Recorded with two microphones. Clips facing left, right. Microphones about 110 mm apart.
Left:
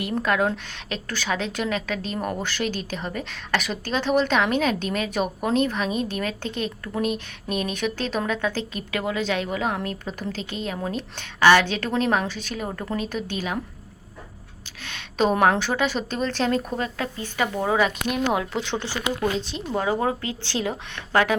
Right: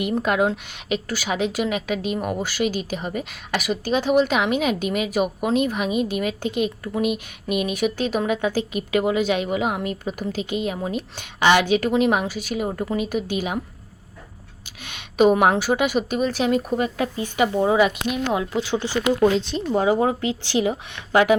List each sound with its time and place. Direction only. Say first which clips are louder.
0.0 s a woman's voice: right 2 dB; 20° right (ahead or behind)
14.8 s a woman's voice: right 5 dB; 15° right (ahead or behind)
18.3 s a woman's voice: right 2 dB; centre (ahead or behind)